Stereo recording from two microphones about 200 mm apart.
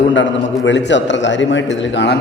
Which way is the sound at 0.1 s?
65° left (ahead or behind).